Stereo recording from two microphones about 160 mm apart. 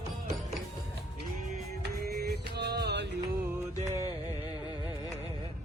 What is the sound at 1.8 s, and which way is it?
Music, 85° right.